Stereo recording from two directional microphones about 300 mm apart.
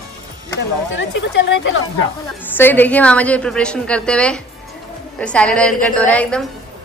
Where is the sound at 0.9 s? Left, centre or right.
Left.